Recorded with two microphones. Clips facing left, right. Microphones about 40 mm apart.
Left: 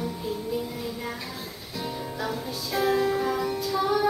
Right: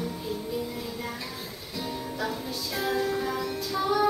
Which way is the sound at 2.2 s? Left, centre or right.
Centre.